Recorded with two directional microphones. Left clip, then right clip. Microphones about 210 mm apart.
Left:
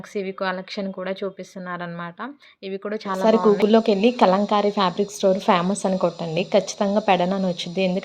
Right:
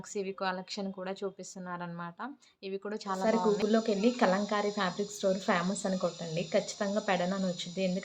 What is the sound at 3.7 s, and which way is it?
A woman's voice, 35° left (ahead or behind).